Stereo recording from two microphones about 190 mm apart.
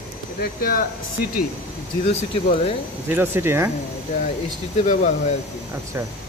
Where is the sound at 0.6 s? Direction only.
50° left (ahead or behind).